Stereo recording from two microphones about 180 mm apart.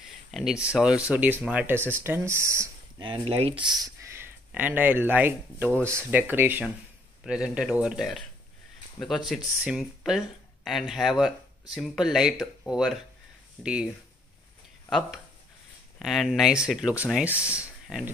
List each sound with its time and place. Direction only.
0.0 s a sound: centre (ahead or behind)
0.7 s speech: 5° right (ahead or behind)
3.0 s speech: 30° right (ahead or behind)
3.5 s speech: centre (ahead or behind)